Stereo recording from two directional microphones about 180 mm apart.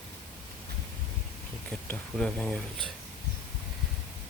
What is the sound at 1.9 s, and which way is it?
Speech, 5° left (ahead or behind).